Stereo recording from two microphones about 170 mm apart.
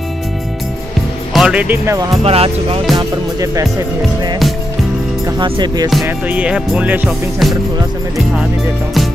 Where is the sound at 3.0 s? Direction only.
20° right (ahead or behind).